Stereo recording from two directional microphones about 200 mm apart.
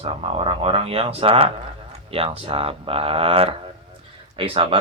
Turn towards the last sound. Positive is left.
turn(degrees=-25)  # may be behind; listen again after turning